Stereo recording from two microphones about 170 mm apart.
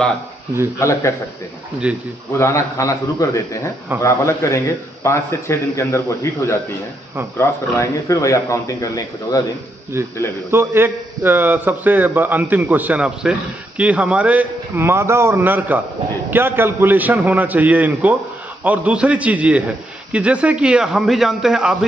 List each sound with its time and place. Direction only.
0.7 s a man's voice: 15° left (ahead or behind)
1.8 s a man's voice: 5° right (ahead or behind)
2.3 s a man's voice: 15° left (ahead or behind)
9.9 s a man's voice: 15° right (ahead or behind)